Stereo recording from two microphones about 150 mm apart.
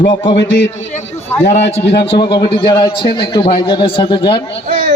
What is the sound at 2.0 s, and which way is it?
A man's voice, 35° left (ahead or behind).